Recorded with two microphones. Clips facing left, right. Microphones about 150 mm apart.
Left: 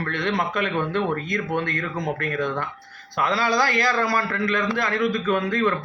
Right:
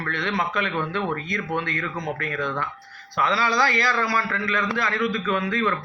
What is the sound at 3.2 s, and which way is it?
A man's voice, 45° left (ahead or behind).